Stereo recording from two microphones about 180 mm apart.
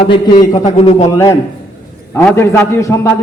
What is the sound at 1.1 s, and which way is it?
A man's voice, 15° left (ahead or behind).